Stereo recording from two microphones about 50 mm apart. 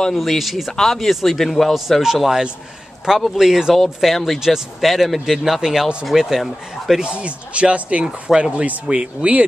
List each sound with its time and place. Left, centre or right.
0.1 s speech: centre
3.3 s speech: centre
3.7 s speech: centre
7.0 s speech: right